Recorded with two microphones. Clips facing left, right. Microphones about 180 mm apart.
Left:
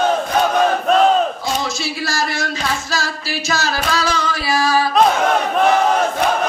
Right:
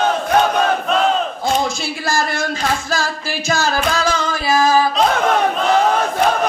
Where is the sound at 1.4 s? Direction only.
55° right (ahead or behind).